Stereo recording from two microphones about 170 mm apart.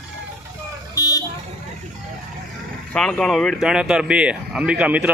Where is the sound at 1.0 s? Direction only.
20° left (ahead or behind).